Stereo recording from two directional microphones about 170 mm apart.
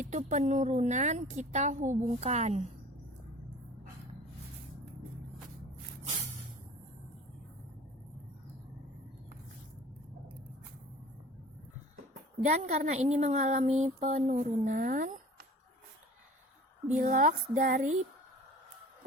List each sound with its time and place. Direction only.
0.0 s a woman's voice: 45° right (ahead or behind)
12.5 s a woman's voice: 45° right (ahead or behind)
17.0 s a woman's voice: 50° right (ahead or behind)